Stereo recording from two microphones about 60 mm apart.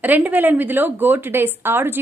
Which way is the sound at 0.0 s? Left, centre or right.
Right.